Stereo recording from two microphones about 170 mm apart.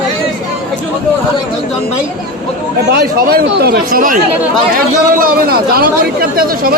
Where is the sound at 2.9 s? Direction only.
65° right (ahead or behind).